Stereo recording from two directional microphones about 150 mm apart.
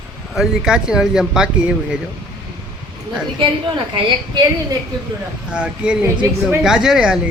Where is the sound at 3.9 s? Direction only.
30° right (ahead or behind).